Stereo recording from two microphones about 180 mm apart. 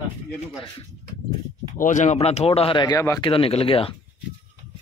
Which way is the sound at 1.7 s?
45° left (ahead or behind).